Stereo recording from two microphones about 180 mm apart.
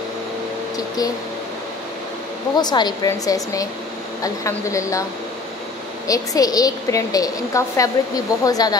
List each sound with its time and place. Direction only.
0.7 s a woman's voice: 20° left (ahead or behind)
2.5 s a woman's voice: 25° left (ahead or behind)
6.0 s a woman's voice: 20° left (ahead or behind)